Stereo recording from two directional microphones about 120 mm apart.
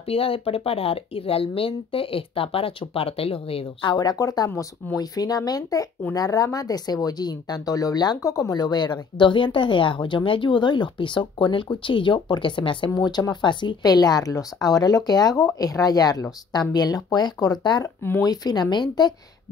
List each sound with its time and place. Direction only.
0.0 s speech: 50° left (ahead or behind)
3.9 s speech: 35° left (ahead or behind)
12.9 s speech: 35° left (ahead or behind)